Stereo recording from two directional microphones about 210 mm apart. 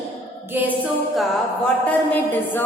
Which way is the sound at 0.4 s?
10° right (ahead or behind).